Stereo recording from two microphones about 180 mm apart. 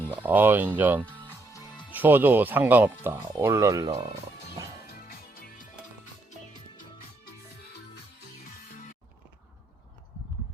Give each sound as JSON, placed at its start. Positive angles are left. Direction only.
{"t": 0.1, "sound": "speech", "side_deg": -10}
{"t": 1.1, "sound": "music", "side_deg": 20}
{"t": 1.9, "sound": "speech", "side_deg": -10}